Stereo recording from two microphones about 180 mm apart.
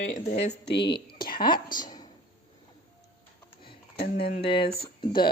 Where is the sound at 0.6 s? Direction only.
70° left (ahead or behind).